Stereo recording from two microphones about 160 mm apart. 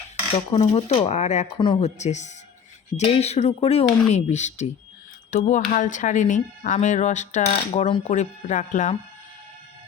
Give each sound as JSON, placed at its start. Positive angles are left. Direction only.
{"t": 0.6, "sound": "speech", "side_deg": 40}
{"t": 1.5, "sound": "speech", "side_deg": 30}
{"t": 1.8, "sound": "speech", "side_deg": 45}